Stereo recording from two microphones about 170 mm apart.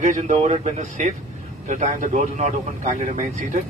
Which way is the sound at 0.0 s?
45° right (ahead or behind).